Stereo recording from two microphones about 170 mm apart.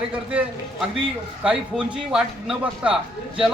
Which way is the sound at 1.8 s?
5° right (ahead or behind).